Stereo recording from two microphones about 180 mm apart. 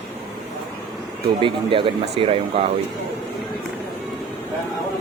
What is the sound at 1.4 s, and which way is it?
Speech, 30° right (ahead or behind).